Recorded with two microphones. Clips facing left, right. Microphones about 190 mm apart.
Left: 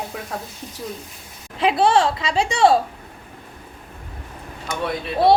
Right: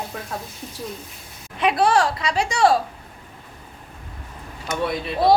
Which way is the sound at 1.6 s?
25° left (ahead or behind).